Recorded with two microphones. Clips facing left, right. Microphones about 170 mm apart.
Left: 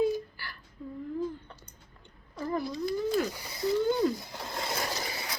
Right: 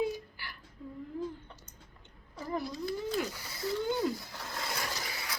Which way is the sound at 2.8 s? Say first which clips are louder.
Left 7 dB; 15° left (ahead or behind).